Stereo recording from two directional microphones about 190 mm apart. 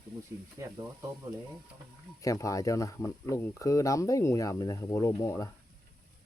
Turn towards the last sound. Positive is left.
turn(degrees=15)  # may be behind; listen again after turning